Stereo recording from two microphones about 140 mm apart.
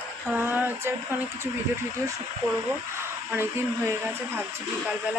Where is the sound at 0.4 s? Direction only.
15° right (ahead or behind).